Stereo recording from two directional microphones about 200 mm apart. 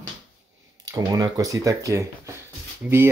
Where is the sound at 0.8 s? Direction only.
20° right (ahead or behind).